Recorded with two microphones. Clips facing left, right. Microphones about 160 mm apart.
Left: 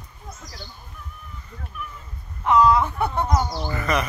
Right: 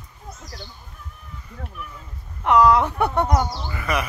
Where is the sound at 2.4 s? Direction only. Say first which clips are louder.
Right 1 dB; 70° right (ahead or behind).